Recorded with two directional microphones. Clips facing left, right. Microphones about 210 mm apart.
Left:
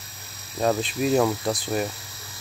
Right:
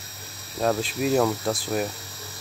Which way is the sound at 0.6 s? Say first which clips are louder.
Left 1 dB; 5° right (ahead or behind).